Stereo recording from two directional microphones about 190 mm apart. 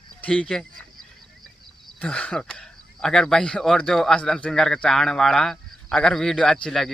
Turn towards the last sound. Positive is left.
turn(degrees=0)  # may be behind; listen again after turning